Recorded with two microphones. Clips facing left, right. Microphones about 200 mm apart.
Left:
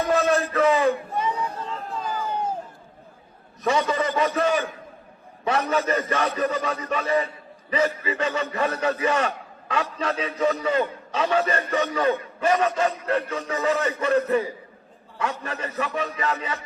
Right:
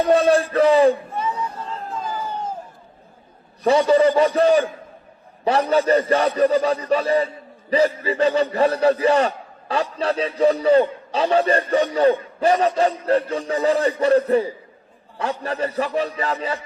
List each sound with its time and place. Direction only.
0.0 s a man's voice: 30° right (ahead or behind)
3.6 s a man's voice: 35° right (ahead or behind)